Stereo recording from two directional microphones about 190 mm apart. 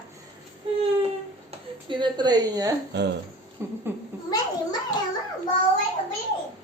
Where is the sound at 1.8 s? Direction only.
25° right (ahead or behind).